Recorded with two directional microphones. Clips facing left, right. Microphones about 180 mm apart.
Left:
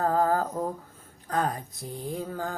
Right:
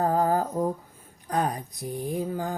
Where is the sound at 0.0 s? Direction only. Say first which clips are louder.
Right 1 dB; 20° right (ahead or behind).